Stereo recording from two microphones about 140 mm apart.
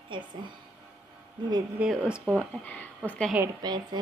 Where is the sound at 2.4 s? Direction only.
10° left (ahead or behind).